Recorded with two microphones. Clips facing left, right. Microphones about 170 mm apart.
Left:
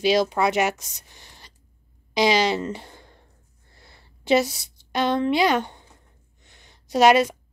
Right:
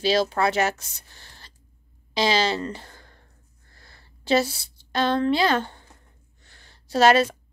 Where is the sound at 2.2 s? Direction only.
20° left (ahead or behind).